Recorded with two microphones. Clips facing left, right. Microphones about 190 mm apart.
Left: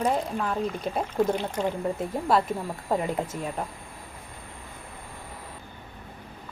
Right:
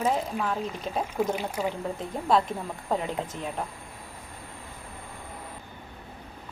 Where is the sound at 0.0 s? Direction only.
5° right (ahead or behind).